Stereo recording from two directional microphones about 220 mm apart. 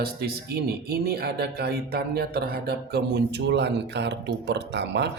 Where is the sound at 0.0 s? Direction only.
45° right (ahead or behind).